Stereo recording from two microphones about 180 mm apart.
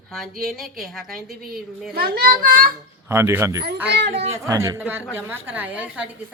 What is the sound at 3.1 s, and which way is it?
Speech, 15° right (ahead or behind).